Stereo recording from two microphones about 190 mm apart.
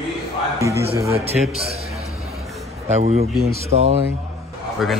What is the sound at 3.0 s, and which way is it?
Speech, 35° right (ahead or behind).